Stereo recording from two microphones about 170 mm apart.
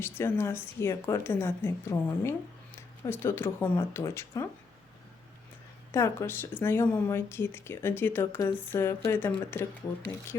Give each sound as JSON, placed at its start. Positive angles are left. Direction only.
{"t": 0.2, "sound": "speech", "side_deg": 15}
{"t": 5.9, "sound": "speech", "side_deg": 15}